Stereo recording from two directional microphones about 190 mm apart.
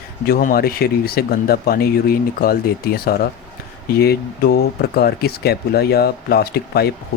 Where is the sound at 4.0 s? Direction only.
55° left (ahead or behind).